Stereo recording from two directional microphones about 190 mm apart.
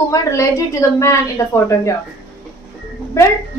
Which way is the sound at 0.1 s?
15° left (ahead or behind).